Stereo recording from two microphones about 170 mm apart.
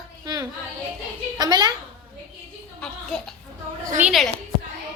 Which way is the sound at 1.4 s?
25° right (ahead or behind).